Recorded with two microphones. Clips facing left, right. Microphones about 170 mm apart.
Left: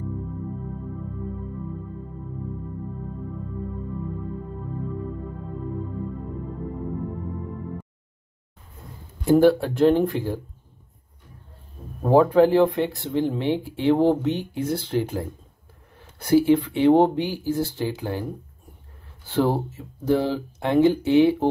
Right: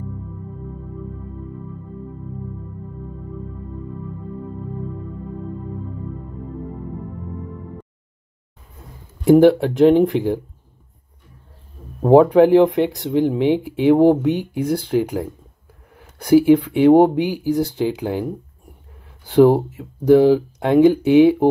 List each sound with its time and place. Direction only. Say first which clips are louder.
9.2 s speech: right 5 dB; 20° right (ahead or behind)
12.0 s speech: right 5 dB; 20° right (ahead or behind)